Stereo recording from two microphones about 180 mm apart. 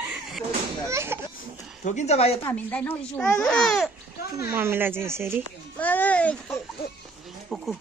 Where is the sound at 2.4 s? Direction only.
10° left (ahead or behind).